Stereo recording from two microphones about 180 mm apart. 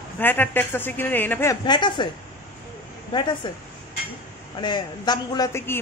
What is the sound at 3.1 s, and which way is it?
Speech, 25° left (ahead or behind).